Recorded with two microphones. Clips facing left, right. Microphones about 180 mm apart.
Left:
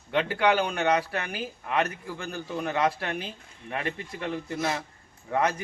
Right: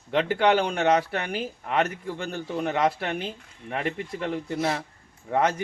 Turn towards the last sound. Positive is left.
turn(degrees=-25)  # may be behind; listen again after turning